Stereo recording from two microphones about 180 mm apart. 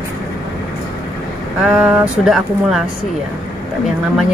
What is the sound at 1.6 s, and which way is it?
Speech, 5° right (ahead or behind).